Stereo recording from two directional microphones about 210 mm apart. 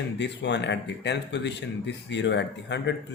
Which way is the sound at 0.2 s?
55° left (ahead or behind).